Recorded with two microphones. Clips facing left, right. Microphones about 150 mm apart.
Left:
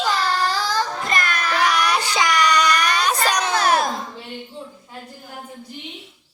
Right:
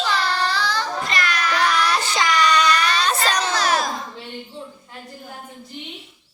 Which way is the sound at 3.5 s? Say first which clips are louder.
Left 3 dB; 55° left (ahead or behind).